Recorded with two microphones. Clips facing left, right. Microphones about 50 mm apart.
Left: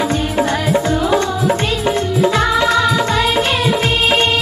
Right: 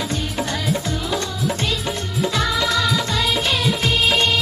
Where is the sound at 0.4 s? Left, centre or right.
Left.